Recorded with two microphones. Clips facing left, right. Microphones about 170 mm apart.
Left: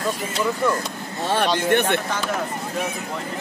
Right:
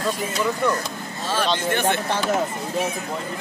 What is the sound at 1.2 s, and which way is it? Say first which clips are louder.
Speech: left 2 dB; 60° left (ahead or behind).